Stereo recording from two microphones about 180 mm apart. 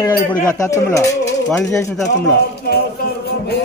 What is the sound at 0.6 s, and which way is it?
Speech, 15° left (ahead or behind).